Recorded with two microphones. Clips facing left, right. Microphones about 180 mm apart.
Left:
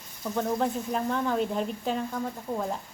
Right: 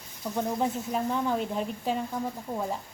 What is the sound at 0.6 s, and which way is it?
Speech, 5° right (ahead or behind).